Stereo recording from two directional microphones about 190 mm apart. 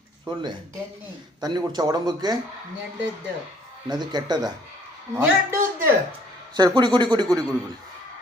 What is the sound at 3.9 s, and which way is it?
A man's voice, 20° right (ahead or behind).